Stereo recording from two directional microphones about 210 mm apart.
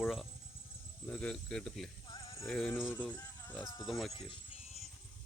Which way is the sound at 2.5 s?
5° left (ahead or behind).